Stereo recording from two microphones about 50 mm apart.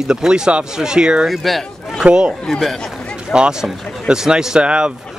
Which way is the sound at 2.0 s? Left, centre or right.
Right.